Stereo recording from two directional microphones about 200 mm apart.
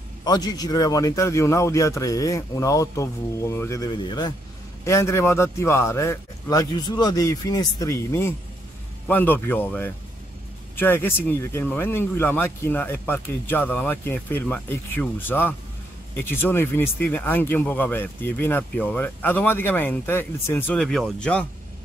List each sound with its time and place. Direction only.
0.2 s speech: 20° left (ahead or behind)